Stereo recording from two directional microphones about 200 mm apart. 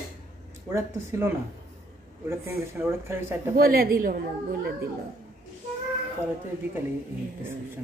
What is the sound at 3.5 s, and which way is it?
A woman's voice, 50° right (ahead or behind).